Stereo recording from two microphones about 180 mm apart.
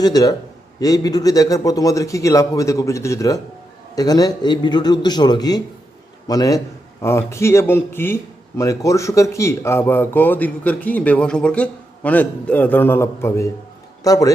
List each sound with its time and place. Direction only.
0.0 s a man's voice: 20° left (ahead or behind)